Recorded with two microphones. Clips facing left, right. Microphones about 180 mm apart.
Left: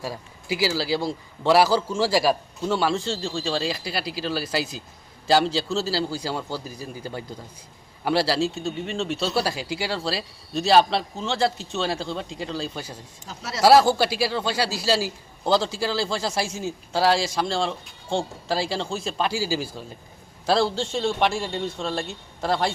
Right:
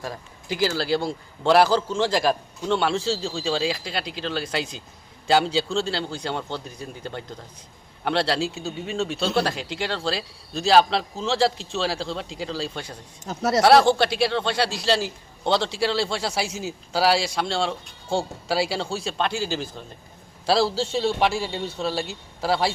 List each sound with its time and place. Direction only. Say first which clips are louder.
0.0 s speech: left 1 dB; 5° left (ahead or behind)
13.2 s speech: right 12 dB; 50° right (ahead or behind)
13.6 s speech: even; 5° left (ahead or behind)
20.5 s speech: right 1 dB; 5° right (ahead or behind)